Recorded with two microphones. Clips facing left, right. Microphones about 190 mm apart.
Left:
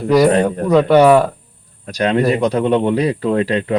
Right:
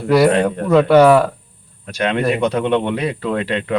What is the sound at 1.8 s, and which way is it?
Speech, 35° left (ahead or behind).